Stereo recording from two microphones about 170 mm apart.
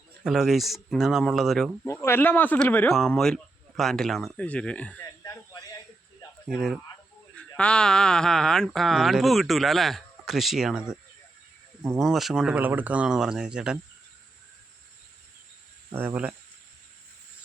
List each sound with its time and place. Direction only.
0.3 s speech: centre (ahead or behind)
1.8 s speech: 15° left (ahead or behind)
5.2 s a sound: 20° left (ahead or behind)
7.3 s speech: 5° left (ahead or behind)
11.9 s speech: centre (ahead or behind)
15.9 s speech: 10° right (ahead or behind)